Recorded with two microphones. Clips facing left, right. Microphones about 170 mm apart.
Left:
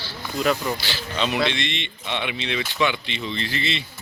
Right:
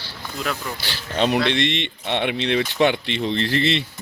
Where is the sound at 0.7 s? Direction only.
55° right (ahead or behind).